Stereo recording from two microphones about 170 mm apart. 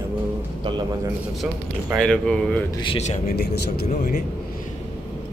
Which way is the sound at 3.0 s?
40° left (ahead or behind).